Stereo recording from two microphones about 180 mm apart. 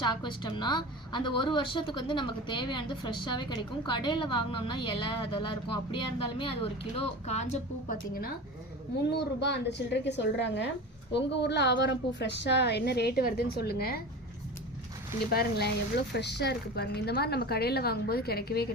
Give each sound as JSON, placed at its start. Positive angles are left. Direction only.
{"t": 0.0, "sound": "a woman's voice", "side_deg": 25}
{"t": 9.0, "sound": "a woman's voice", "side_deg": 70}
{"t": 15.3, "sound": "a woman's voice", "side_deg": 60}